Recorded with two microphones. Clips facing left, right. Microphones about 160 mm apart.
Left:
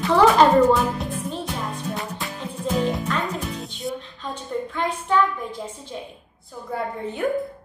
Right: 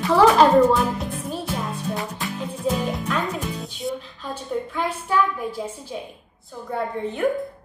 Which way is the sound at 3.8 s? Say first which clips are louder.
Right 2 dB; 5° right (ahead or behind).